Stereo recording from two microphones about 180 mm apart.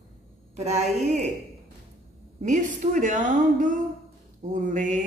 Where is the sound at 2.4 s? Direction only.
45° right (ahead or behind).